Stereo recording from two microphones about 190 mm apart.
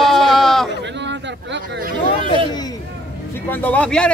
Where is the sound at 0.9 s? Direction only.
70° right (ahead or behind).